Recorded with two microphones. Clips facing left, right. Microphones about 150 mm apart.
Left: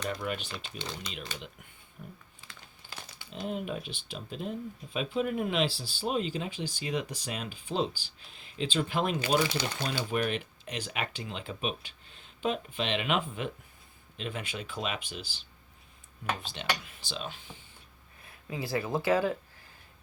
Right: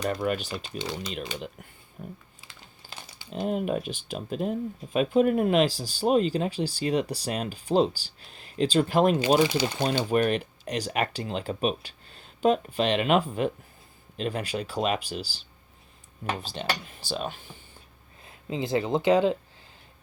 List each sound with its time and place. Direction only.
0.1 s speech: 45° right (ahead or behind)
2.0 s speech: 45° right (ahead or behind)
2.8 s crumpling: 40° right (ahead or behind)
3.3 s speech: 50° right (ahead or behind)
9.4 s speech: 25° right (ahead or behind)
10.2 s speech: 40° right (ahead or behind)
16.5 s speech: 35° right (ahead or behind)
17.1 s speech: 50° right (ahead or behind)
18.2 s speech: 25° right (ahead or behind)